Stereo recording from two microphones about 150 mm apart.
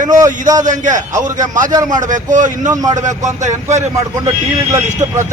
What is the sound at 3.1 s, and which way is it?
Speech, 55° right (ahead or behind).